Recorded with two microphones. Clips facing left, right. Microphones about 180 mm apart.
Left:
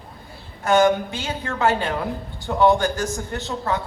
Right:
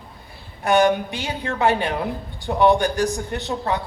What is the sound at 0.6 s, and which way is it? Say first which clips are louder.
A woman's voice: even; 15° right (ahead or behind).